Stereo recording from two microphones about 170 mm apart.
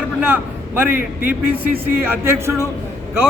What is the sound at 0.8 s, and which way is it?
A man's voice, 10° right (ahead or behind).